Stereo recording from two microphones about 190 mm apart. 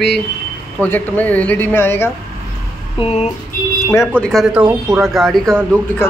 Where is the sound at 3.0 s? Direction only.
35° left (ahead or behind).